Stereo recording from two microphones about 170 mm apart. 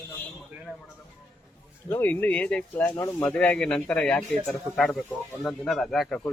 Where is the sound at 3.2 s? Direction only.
10° left (ahead or behind).